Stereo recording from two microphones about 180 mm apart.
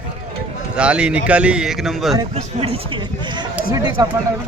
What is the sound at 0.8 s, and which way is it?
Speech, 5° right (ahead or behind).